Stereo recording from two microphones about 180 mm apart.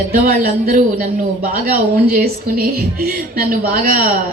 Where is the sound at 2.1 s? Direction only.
55° right (ahead or behind).